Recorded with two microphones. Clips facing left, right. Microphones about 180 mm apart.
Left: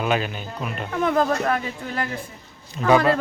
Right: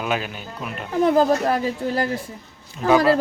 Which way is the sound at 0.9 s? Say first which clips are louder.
Right 4 dB; 35° right (ahead or behind).